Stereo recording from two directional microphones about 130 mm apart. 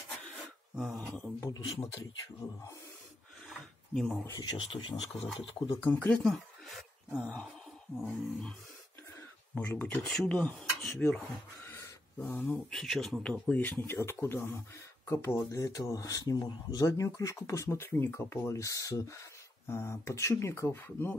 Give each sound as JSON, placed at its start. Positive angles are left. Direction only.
{"t": 0.7, "sound": "speech", "side_deg": 0}
{"t": 1.4, "sound": "speech", "side_deg": 30}
{"t": 3.9, "sound": "a sound", "side_deg": 0}
{"t": 4.3, "sound": "speech", "side_deg": 30}
{"t": 5.9, "sound": "speech", "side_deg": 15}
{"t": 8.0, "sound": "a sound", "side_deg": 5}
{"t": 9.6, "sound": "speech", "side_deg": 10}
{"t": 11.1, "sound": "a sound", "side_deg": 15}
{"t": 12.4, "sound": "speech", "side_deg": 5}